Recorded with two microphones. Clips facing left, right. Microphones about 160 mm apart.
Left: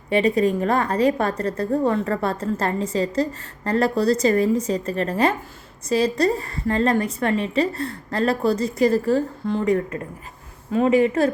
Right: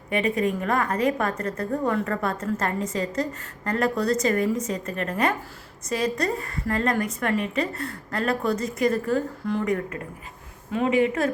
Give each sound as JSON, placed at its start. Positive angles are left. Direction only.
{"t": 0.1, "sound": "a woman's voice", "side_deg": 35}